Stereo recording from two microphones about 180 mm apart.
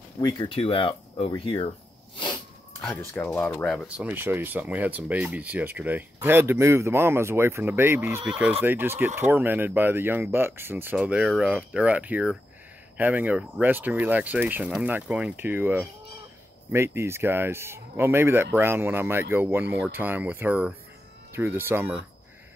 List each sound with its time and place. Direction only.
0.2 s speech: 25° left (ahead or behind)
2.8 s speech: 5° left (ahead or behind)
3.8 s speech: 10° right (ahead or behind)